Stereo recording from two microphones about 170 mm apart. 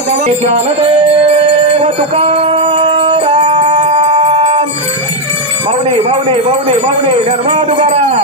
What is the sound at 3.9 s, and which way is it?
Wind chime, 35° right (ahead or behind).